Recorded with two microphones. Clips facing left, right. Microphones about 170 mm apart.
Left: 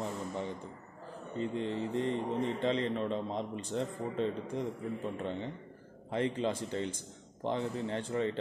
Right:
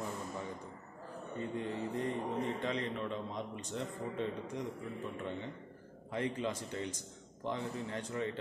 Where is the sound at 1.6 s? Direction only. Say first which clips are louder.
Left 4 dB; 25° left (ahead or behind).